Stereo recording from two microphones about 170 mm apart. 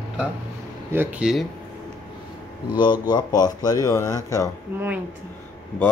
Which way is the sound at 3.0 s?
25° left (ahead or behind).